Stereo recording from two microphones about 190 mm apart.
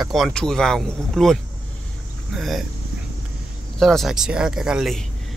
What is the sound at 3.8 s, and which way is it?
Speech, centre (ahead or behind).